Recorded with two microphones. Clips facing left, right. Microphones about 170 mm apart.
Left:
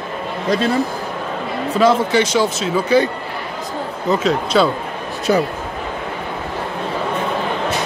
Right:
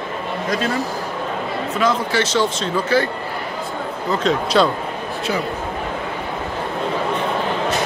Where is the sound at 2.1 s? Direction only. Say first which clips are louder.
Left 3 dB; 15° left (ahead or behind).